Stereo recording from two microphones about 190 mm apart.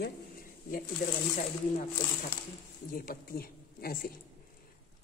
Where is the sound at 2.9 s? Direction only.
50° left (ahead or behind).